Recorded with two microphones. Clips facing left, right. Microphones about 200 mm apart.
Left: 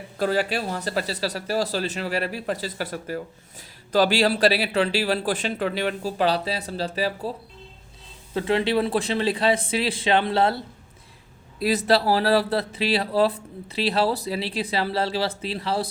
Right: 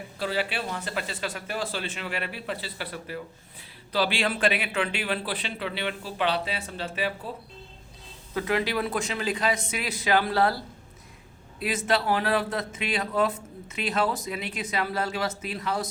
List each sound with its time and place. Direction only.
0.2 s a man's voice: 45° left (ahead or behind)
8.3 s speech: 25° left (ahead or behind)
11.6 s a man's voice: 35° left (ahead or behind)